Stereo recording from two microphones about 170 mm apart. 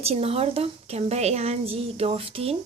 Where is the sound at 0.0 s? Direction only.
35° right (ahead or behind).